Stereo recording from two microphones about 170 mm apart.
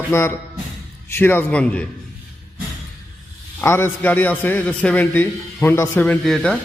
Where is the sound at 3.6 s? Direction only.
15° left (ahead or behind).